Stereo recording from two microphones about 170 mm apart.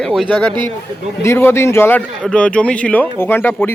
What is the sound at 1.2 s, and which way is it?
Speech, 15° left (ahead or behind).